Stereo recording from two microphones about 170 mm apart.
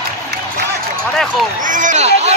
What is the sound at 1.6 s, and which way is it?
Speech, 50° right (ahead or behind).